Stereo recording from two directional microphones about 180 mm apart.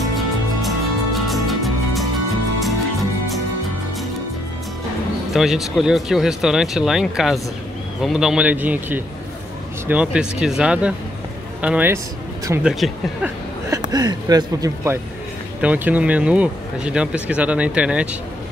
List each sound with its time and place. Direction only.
0.0 s music: centre (ahead or behind)
5.3 s speech: centre (ahead or behind)
13.7 s speech: 20° right (ahead or behind)
15.6 s speech: 10° right (ahead or behind)